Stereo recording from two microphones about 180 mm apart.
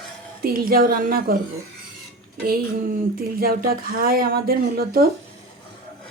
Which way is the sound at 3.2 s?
55° right (ahead or behind).